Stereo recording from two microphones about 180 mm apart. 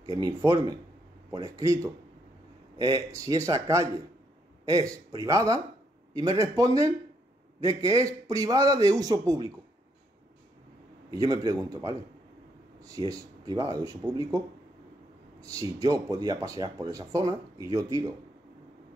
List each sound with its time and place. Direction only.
0.0 s speech: 20° right (ahead or behind)
11.1 s a man's voice: 20° right (ahead or behind)
12.9 s speech: 20° right (ahead or behind)
15.4 s speech: 20° right (ahead or behind)